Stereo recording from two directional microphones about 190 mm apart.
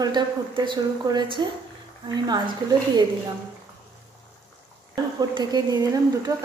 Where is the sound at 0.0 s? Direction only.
25° right (ahead or behind).